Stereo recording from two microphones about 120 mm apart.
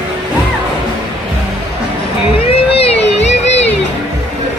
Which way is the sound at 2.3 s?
55° left (ahead or behind).